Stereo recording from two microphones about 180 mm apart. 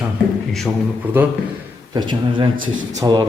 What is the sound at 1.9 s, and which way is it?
A man's voice, 25° right (ahead or behind).